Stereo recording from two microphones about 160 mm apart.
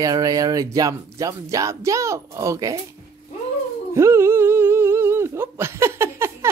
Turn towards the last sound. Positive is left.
turn(degrees=-15)  # may be behind; listen again after turning